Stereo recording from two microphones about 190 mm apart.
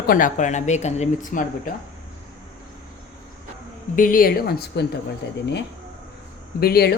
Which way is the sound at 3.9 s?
45° left (ahead or behind).